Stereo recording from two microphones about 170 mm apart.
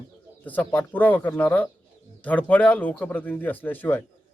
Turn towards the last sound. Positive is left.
turn(degrees=10)  # may be behind; listen again after turning